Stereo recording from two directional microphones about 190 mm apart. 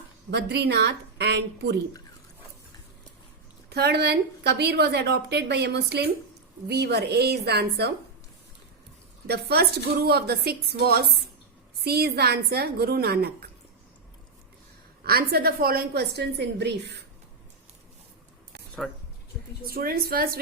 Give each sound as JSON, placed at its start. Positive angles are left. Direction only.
{"t": 0.3, "sound": "a woman's voice", "side_deg": -60}
{"t": 3.7, "sound": "a woman's voice", "side_deg": -60}
{"t": 9.2, "sound": "a woman's voice", "side_deg": -55}
{"t": 15.0, "sound": "a woman's voice", "side_deg": -55}
{"t": 18.8, "sound": "speech", "side_deg": 0}
{"t": 19.7, "sound": "a woman's voice", "side_deg": -55}